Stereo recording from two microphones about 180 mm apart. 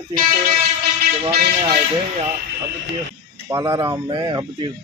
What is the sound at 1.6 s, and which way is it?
Speech, 30° right (ahead or behind).